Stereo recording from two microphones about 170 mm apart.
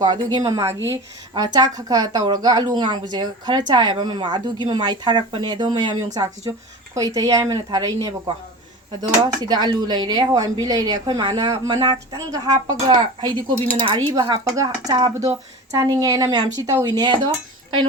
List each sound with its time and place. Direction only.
0.0 s speech: 25° right (ahead or behind)